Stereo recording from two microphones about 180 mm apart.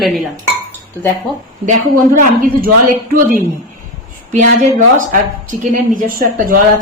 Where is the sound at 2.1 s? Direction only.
50° right (ahead or behind).